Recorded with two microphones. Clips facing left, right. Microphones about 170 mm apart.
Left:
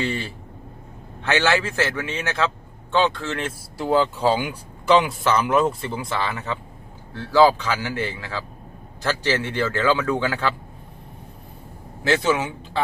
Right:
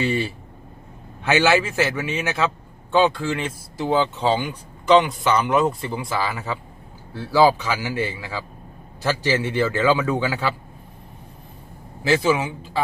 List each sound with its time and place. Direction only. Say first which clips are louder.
0.0 s a man's voice: right 4 dB; 15° right (ahead or behind)
12.0 s speech: right 1 dB; 5° right (ahead or behind)